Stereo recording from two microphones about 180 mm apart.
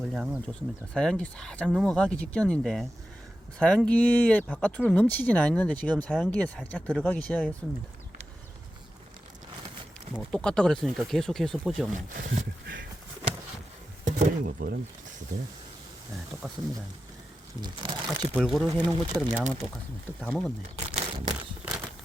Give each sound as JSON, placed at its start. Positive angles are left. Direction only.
{"t": 0.0, "sound": "speech", "side_deg": -5}
{"t": 0.9, "sound": "speech", "side_deg": 5}
{"t": 10.2, "sound": "speech", "side_deg": 5}
{"t": 11.9, "sound": "a sound", "side_deg": -50}
{"t": 14.2, "sound": "speech", "side_deg": -55}
{"t": 16.4, "sound": "speech", "side_deg": -15}
{"t": 17.6, "sound": "speech", "side_deg": -25}
{"t": 18.3, "sound": "speech", "side_deg": 0}
{"t": 18.9, "sound": "speech", "side_deg": -10}
{"t": 20.1, "sound": "speech", "side_deg": 0}
{"t": 20.6, "sound": "speech", "side_deg": -35}